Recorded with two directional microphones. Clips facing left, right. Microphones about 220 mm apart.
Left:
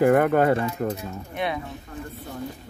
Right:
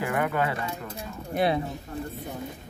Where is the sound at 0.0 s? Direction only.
45° left (ahead or behind).